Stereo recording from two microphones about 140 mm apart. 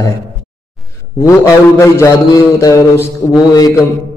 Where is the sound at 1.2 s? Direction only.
15° left (ahead or behind).